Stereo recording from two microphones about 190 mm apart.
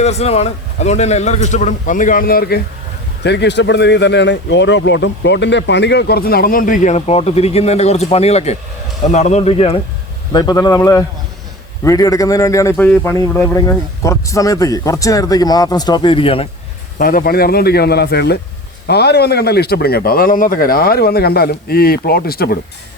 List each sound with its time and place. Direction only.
0.0 s a man's voice: 35° left (ahead or behind); by 2.6 s 55° left (ahead or behind)
3.2 s a man's voice: 65° left (ahead or behind); by 9.7 s 30° left (ahead or behind)
10.3 s a man's voice: 20° left (ahead or behind)
17.0 s speech: 50° left (ahead or behind)